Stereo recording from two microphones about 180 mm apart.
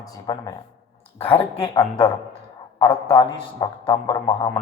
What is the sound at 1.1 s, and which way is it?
Speech, 30° left (ahead or behind).